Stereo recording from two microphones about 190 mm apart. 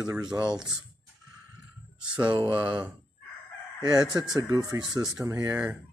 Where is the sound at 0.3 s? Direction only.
20° right (ahead or behind).